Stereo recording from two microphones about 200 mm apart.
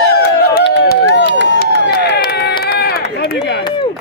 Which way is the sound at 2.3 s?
50° left (ahead or behind).